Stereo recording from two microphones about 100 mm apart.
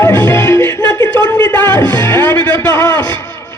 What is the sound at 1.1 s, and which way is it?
Speech, 15° left (ahead or behind).